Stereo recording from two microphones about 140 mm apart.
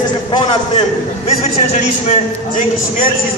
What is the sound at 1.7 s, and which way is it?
Speech, 60° left (ahead or behind).